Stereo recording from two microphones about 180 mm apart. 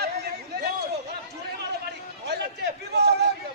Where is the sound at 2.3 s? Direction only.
65° right (ahead or behind).